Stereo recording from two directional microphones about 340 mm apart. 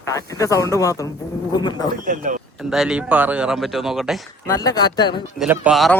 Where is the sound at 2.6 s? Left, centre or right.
Centre.